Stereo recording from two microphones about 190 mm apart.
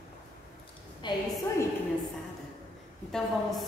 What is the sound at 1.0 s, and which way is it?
Speech, 25° left (ahead or behind).